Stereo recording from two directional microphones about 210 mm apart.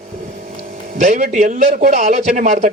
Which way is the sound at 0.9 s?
35° right (ahead or behind).